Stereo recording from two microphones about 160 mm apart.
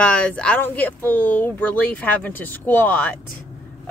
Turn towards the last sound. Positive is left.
turn(degrees=10)  # may be behind; listen again after turning